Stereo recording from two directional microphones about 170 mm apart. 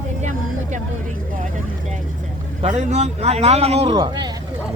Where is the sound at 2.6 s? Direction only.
40° right (ahead or behind).